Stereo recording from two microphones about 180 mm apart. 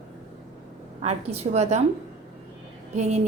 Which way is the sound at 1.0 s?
35° right (ahead or behind).